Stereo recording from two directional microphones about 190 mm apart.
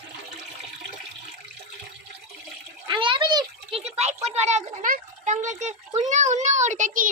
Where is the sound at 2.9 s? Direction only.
25° right (ahead or behind).